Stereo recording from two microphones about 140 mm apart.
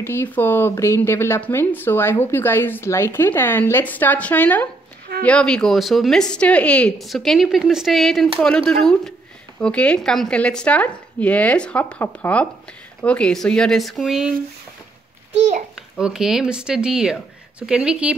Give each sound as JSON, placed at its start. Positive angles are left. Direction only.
{"t": 0.0, "sound": "speech", "side_deg": 15}
{"t": 15.3, "sound": "a child's voice", "side_deg": -60}
{"t": 15.7, "sound": "speech", "side_deg": -5}